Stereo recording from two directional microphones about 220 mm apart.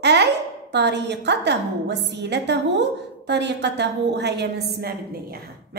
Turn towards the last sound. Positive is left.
turn(degrees=-50)  # may be behind; listen again after turning